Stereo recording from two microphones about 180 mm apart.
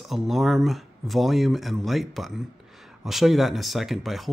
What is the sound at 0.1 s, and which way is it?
Speech, centre (ahead or behind).